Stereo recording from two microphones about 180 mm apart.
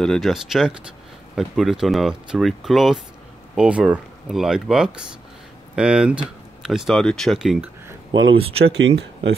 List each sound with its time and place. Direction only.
0.0 s speech: centre (ahead or behind)
8.7 s speech: 85° right